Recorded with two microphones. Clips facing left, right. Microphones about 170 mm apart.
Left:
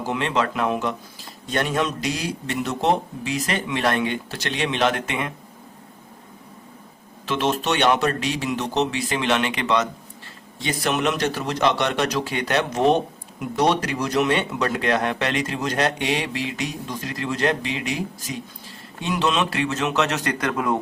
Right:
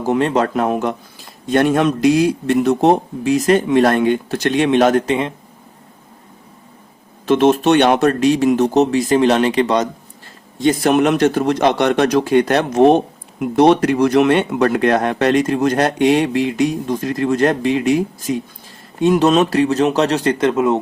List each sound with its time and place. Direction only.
0.0 s speech: 40° right (ahead or behind)
7.3 s speech: 50° right (ahead or behind); by 20.7 s 25° right (ahead or behind)